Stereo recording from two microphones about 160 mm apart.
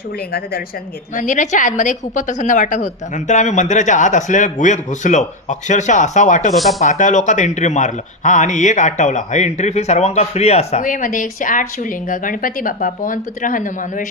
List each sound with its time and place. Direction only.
1.1 s a man's voice: 55° left (ahead or behind)
6.5 s speech: centre (ahead or behind)
6.8 s a man's voice: 50° left (ahead or behind)
10.8 s speech: 55° left (ahead or behind)